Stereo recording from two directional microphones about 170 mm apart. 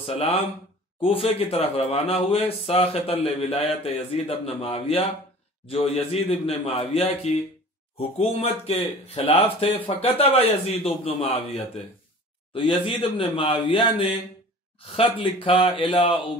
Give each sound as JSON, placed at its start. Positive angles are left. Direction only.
{"t": 0.0, "sound": "speech", "side_deg": 35}